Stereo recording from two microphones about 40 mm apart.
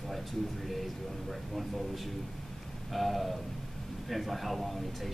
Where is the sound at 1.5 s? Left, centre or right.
Centre.